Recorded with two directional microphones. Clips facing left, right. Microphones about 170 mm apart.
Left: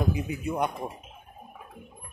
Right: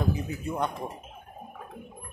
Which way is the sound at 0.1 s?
15° left (ahead or behind).